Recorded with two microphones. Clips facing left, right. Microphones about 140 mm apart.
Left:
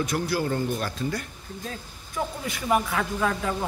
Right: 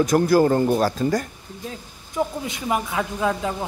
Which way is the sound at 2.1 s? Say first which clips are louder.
Right 5 dB; 20° right (ahead or behind).